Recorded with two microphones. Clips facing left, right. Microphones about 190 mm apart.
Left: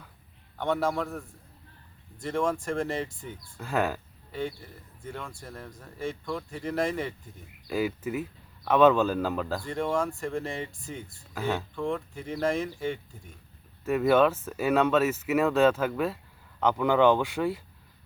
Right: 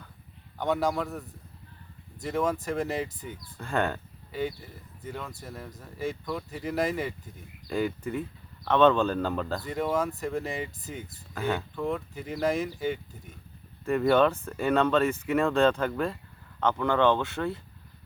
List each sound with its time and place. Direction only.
0.6 s speech: centre (ahead or behind)